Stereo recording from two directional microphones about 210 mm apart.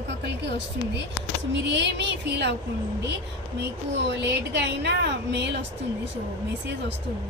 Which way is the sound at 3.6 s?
55° right (ahead or behind).